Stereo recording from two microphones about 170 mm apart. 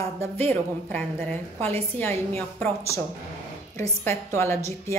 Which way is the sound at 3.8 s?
15° left (ahead or behind).